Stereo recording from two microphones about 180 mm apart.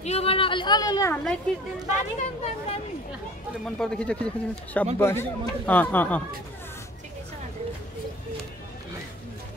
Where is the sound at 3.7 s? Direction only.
5° left (ahead or behind).